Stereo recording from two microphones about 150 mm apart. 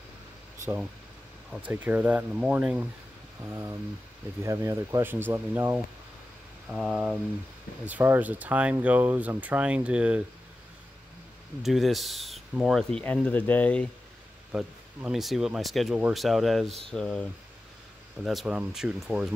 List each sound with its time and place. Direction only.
1.5 s speech: 10° right (ahead or behind)
6.7 s speech: 5° right (ahead or behind)
11.6 s speech: centre (ahead or behind)
13.0 s speech: 10° left (ahead or behind)
14.5 s speech: 5° right (ahead or behind)